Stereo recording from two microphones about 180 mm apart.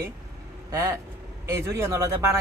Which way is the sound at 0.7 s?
15° right (ahead or behind).